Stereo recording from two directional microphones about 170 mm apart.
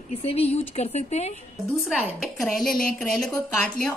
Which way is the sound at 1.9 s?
Centre (ahead or behind).